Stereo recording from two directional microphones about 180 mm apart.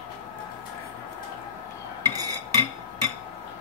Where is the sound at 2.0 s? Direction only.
20° right (ahead or behind).